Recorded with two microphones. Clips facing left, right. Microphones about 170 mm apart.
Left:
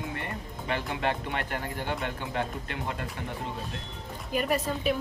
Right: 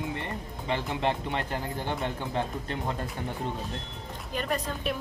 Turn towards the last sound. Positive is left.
turn(degrees=5)  # may be behind; listen again after turning